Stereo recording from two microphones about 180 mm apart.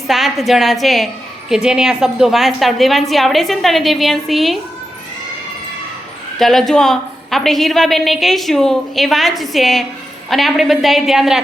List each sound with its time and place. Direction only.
0.1 s a woman's voice: centre (ahead or behind)
6.4 s a woman's voice: centre (ahead or behind)